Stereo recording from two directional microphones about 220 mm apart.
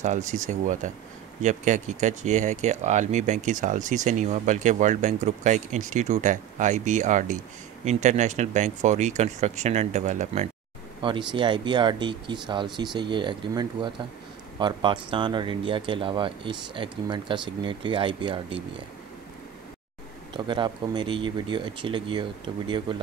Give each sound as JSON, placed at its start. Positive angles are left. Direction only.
{"t": 0.0, "sound": "speech", "side_deg": -35}
{"t": 20.3, "sound": "speech", "side_deg": -20}